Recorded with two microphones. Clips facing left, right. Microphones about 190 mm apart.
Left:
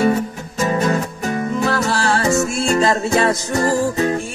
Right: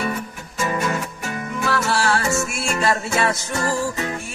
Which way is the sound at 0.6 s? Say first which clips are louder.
Left 5 dB; 40° left (ahead or behind).